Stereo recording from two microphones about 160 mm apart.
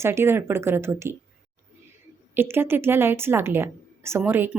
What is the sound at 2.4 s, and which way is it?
A woman's voice, 15° right (ahead or behind).